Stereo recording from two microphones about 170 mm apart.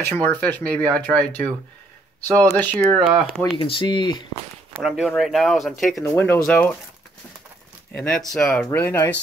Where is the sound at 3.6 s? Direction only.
30° left (ahead or behind).